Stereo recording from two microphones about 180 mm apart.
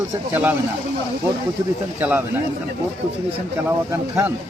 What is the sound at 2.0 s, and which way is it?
Speech, 10° right (ahead or behind).